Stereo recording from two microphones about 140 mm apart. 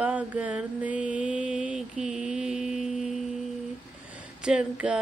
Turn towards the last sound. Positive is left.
turn(degrees=-10)  # may be behind; listen again after turning